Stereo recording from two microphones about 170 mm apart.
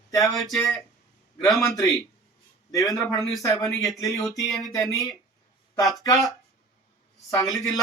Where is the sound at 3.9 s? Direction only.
20° left (ahead or behind).